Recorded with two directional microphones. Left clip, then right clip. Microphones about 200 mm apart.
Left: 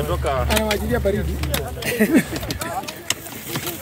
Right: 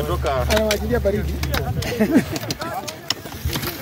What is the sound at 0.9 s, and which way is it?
Speech, 40° left (ahead or behind).